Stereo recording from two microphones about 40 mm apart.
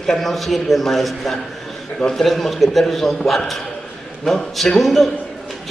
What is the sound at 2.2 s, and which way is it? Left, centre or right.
A man's voice, centre.